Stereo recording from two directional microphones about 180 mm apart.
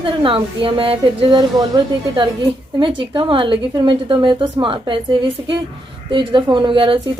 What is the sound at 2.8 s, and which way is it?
Speech, 25° right (ahead or behind).